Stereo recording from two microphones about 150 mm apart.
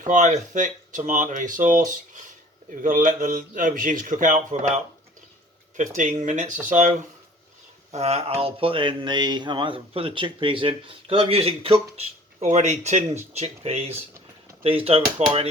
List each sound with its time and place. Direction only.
0.0 s speech: 55° right (ahead or behind)
6.0 s speech: 55° right (ahead or behind)
7.9 s speech: 45° right (ahead or behind)